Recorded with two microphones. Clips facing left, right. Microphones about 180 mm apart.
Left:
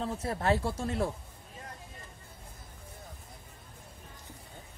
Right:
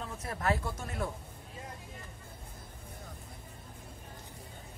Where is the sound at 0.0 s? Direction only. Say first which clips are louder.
Left 4 dB; 30° left (ahead or behind).